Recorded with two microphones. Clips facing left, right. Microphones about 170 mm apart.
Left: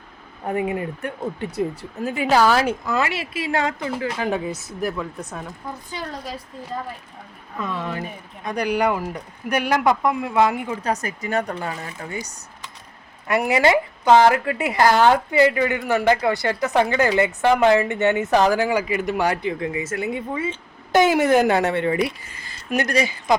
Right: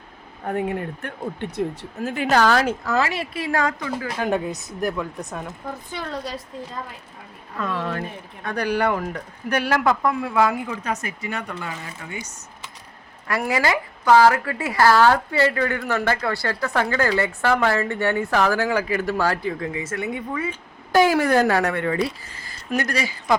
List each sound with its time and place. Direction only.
0.4 s speech: 5° left (ahead or behind)
2.8 s speech: 20° left (ahead or behind)
4.2 s speech: centre (ahead or behind)
5.9 s a woman's voice: 55° right (ahead or behind)
7.6 s speech: 10° left (ahead or behind)
10.8 s speech: 40° left (ahead or behind)
13.2 s speech: 20° left (ahead or behind)